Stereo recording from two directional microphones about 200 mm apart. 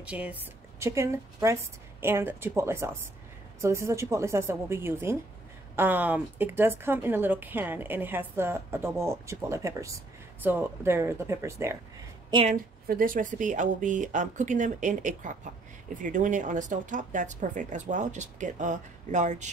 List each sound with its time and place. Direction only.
0.0 s a woman's voice: 5° right (ahead or behind)
12.3 s a woman's voice: 25° right (ahead or behind)
12.8 s speech: 45° right (ahead or behind)